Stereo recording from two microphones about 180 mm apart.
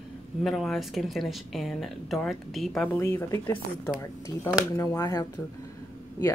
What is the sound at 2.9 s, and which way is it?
A woman's voice, 15° left (ahead or behind).